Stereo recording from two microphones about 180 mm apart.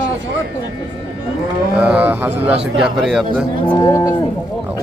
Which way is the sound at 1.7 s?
5° right (ahead or behind).